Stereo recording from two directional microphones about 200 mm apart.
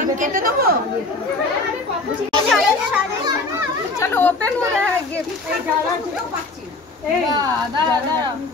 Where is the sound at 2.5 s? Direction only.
Centre (ahead or behind).